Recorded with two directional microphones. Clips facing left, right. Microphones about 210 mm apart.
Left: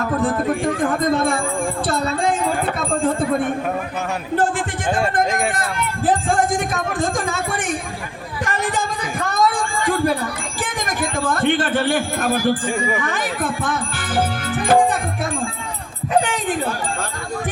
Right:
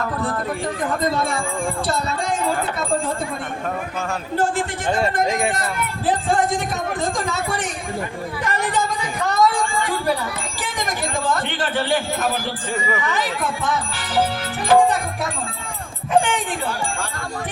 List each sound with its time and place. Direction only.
1.1 s speech: 50° left (ahead or behind)
5.2 s speech: centre (ahead or behind)
6.1 s speech: 45° left (ahead or behind)
8.4 s music: 50° left (ahead or behind)
10.8 s speech: 50° left (ahead or behind)
12.6 s speech: 15° left (ahead or behind)
13.0 s speech: 50° left (ahead or behind)